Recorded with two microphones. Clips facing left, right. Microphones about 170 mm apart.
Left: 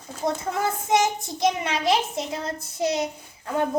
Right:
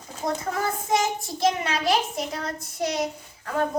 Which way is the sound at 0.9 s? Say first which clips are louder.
Left 3 dB; 20° left (ahead or behind).